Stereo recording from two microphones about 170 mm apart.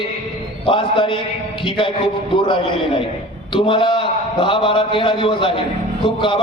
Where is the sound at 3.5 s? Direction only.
30° left (ahead or behind).